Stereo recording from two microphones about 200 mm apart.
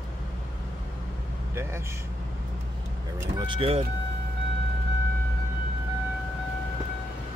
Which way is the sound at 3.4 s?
25° right (ahead or behind).